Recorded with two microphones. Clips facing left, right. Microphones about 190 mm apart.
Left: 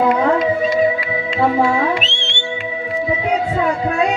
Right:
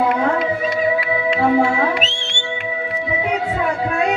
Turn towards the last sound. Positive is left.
turn(degrees=-45)  # may be behind; listen again after turning